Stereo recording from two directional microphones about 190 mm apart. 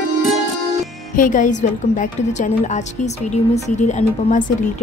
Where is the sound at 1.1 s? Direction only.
45° left (ahead or behind).